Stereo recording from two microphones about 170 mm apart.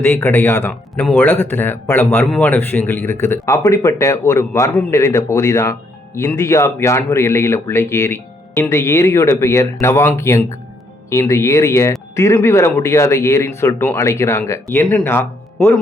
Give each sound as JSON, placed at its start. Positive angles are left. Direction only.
{"t": 0.0, "sound": "speech", "side_deg": 15}